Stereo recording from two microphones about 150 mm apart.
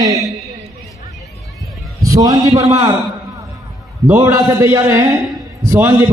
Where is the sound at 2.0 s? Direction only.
25° right (ahead or behind).